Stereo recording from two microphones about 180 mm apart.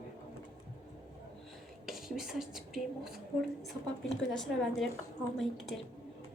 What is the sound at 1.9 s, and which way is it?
Speech, 5° right (ahead or behind).